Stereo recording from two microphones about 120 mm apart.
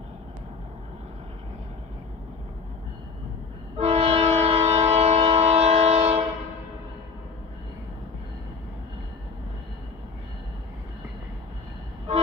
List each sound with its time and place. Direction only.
3.7 s train: 60° right (ahead or behind)